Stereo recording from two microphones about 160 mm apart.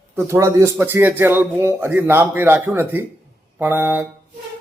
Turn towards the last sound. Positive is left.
turn(degrees=-15)  # may be behind; listen again after turning